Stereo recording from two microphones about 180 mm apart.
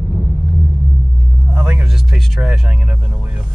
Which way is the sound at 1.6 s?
5° right (ahead or behind).